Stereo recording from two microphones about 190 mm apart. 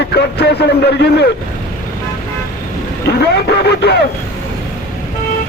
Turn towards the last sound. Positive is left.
turn(degrees=60)  # may be behind; listen again after turning